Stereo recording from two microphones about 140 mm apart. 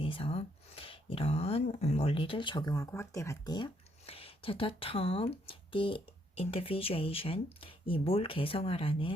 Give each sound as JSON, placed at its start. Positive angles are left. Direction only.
{"t": 0.0, "sound": "speech", "side_deg": 40}
{"t": 4.0, "sound": "speech", "side_deg": 45}